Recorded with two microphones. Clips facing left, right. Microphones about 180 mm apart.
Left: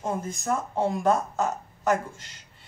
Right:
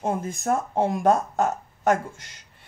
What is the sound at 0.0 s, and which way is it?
Speech, 55° right (ahead or behind).